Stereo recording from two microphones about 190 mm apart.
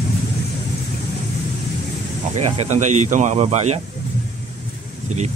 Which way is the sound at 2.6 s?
40° right (ahead or behind).